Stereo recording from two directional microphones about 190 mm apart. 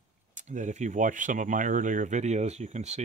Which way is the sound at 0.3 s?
40° right (ahead or behind).